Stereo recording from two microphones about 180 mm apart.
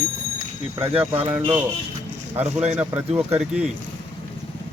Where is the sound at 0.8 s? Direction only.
30° right (ahead or behind).